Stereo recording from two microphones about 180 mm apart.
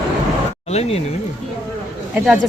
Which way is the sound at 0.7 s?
35° left (ahead or behind).